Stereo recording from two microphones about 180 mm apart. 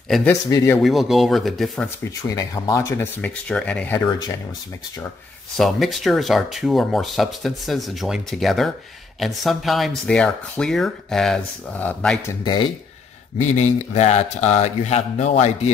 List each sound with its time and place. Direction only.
0.3 s speech: 20° left (ahead or behind)
0.8 s speech: centre (ahead or behind)
2.2 s speech: 20° left (ahead or behind)
5.6 s speech: centre (ahead or behind)
12.3 s speech: 25° left (ahead or behind)
13.4 s speech: 40° left (ahead or behind)